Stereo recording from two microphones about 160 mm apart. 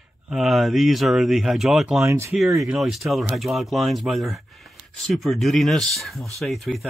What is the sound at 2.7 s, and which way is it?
Speech, centre (ahead or behind).